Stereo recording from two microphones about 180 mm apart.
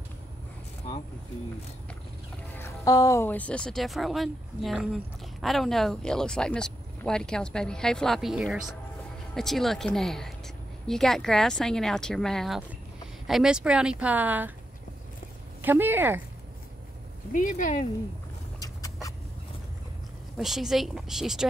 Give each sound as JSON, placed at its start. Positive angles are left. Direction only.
{"t": 2.5, "sound": "speech", "side_deg": 15}
{"t": 15.6, "sound": "speech", "side_deg": -10}
{"t": 17.3, "sound": "speech", "side_deg": 45}
{"t": 18.6, "sound": "vehicle", "side_deg": 20}
{"t": 20.3, "sound": "speech", "side_deg": 0}